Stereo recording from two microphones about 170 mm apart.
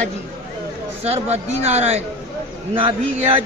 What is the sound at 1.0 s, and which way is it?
A man's voice, 40° right (ahead or behind).